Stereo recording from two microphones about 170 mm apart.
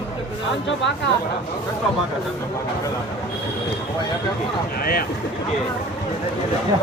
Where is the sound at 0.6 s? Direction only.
90° left.